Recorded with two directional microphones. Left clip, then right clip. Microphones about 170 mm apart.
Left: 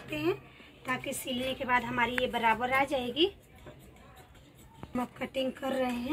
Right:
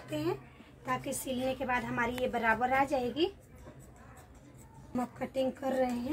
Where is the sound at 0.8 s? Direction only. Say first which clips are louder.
Left 1 dB; 15° right (ahead or behind).